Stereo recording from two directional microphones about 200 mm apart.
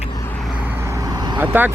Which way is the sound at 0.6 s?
10° right (ahead or behind).